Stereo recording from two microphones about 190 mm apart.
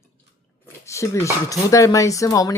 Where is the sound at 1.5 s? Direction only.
15° left (ahead or behind).